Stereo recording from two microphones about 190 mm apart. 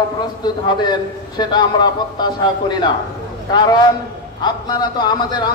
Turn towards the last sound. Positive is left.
turn(degrees=25)  # may be behind; listen again after turning